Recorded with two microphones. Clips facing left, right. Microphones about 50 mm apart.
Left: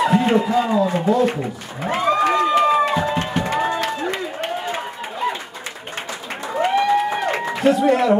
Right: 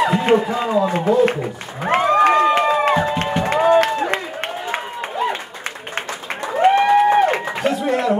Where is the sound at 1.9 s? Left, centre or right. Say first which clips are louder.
Right 4 dB; right.